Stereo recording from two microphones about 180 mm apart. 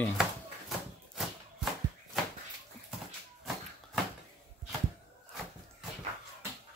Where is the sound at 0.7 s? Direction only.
Centre (ahead or behind).